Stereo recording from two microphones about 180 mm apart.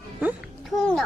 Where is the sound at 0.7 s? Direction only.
5° left (ahead or behind).